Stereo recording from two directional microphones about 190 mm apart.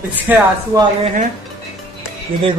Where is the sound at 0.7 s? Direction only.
15° right (ahead or behind).